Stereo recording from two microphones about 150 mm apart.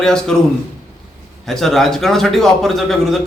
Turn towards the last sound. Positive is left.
turn(degrees=0)  # may be behind; listen again after turning